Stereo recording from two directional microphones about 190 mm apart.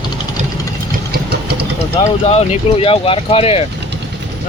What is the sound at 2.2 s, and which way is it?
Speech, 35° left (ahead or behind).